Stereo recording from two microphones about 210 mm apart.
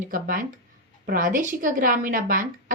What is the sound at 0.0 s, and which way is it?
A woman's voice, 40° right (ahead or behind).